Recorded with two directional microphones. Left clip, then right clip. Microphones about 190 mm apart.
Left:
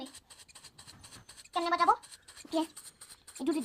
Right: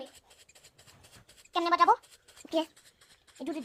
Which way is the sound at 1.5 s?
60° right (ahead or behind).